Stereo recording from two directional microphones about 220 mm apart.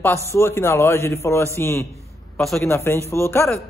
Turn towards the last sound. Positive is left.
turn(degrees=10)  # may be behind; listen again after turning